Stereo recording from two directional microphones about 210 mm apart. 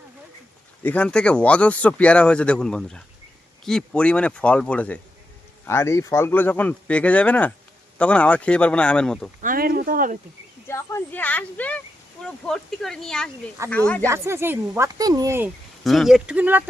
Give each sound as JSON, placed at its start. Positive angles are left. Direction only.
{"t": 0.8, "sound": "speech", "side_deg": 5}
{"t": 9.4, "sound": "speech", "side_deg": -45}
{"t": 10.7, "sound": "speech", "side_deg": 15}
{"t": 14.0, "sound": "speech", "side_deg": -10}
{"t": 15.8, "sound": "speech", "side_deg": 0}